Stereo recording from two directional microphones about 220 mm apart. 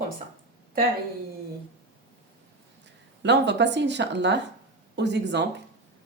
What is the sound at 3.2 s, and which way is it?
Speech, 50° right (ahead or behind).